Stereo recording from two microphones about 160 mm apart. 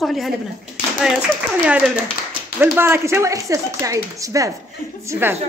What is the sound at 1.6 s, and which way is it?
A woman's voice, 5° right (ahead or behind).